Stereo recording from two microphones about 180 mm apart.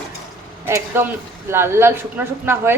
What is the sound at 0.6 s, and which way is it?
A man's voice, 10° right (ahead or behind).